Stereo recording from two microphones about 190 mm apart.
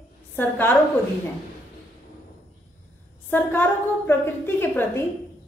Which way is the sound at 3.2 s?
10° left (ahead or behind).